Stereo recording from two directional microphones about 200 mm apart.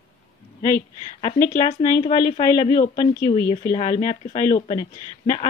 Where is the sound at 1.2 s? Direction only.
25° left (ahead or behind).